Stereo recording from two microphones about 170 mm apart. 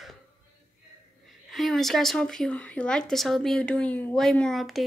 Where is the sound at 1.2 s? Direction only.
Centre (ahead or behind).